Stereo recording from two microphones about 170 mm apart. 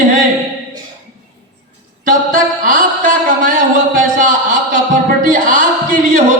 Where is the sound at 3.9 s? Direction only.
50° right (ahead or behind).